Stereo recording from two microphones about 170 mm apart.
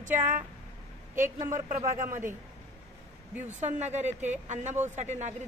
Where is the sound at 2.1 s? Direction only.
15° right (ahead or behind).